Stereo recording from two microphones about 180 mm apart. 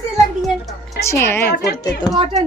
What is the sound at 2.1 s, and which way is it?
Speech, 35° right (ahead or behind).